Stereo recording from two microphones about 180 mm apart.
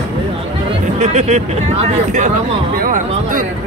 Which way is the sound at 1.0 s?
40° right (ahead or behind).